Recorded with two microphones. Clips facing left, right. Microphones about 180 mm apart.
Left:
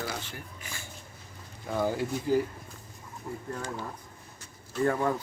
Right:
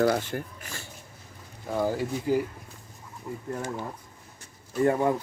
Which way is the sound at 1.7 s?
5° right (ahead or behind).